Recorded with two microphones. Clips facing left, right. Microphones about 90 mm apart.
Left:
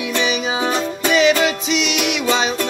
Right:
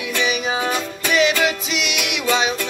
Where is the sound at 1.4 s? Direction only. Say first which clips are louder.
Left 3 dB; 5° right (ahead or behind).